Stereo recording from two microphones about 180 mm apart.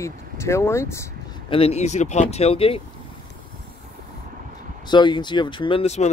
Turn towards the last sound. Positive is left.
turn(degrees=35)  # may be behind; listen again after turning